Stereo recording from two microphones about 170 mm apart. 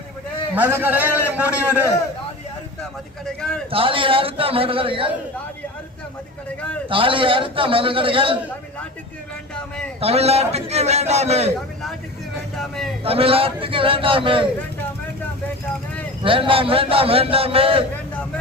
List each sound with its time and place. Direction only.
0.5 s a man's voice: 10° right (ahead or behind)
3.2 s speech: 5° left (ahead or behind)
3.7 s a man's voice: 30° right (ahead or behind)
6.8 s a man's voice: 30° right (ahead or behind)
10.0 s a man's voice: 35° right (ahead or behind)
12.5 s speech: centre (ahead or behind)
13.1 s a man's voice: 35° right (ahead or behind)
16.2 s a man's voice: 30° right (ahead or behind)